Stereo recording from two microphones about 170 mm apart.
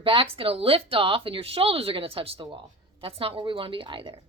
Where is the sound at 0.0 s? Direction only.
30° right (ahead or behind).